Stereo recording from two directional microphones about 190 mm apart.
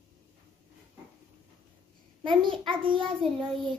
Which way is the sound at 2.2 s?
25° right (ahead or behind).